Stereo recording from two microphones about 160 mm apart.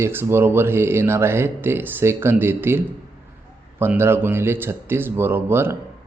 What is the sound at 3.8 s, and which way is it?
Speech, 15° right (ahead or behind).